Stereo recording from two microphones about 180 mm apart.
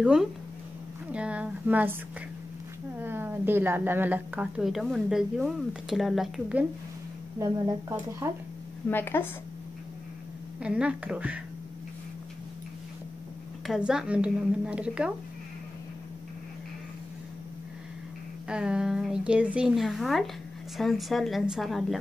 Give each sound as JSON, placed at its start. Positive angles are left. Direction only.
{"t": 0.0, "sound": "a woman's voice", "side_deg": -5}
{"t": 3.0, "sound": "a woman's voice", "side_deg": -10}
{"t": 7.3, "sound": "a woman's voice", "side_deg": -20}
{"t": 8.9, "sound": "a woman's voice", "side_deg": 10}
{"t": 10.6, "sound": "a woman's voice", "side_deg": -5}
{"t": 13.7, "sound": "a woman's voice", "side_deg": -5}
{"t": 18.5, "sound": "a woman's voice", "side_deg": -5}